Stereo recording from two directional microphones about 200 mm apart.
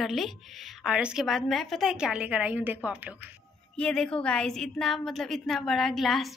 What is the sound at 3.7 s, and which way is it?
Speech, 5° left (ahead or behind).